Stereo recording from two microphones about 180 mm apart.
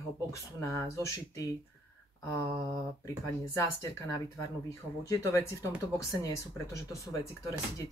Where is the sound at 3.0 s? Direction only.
15° left (ahead or behind).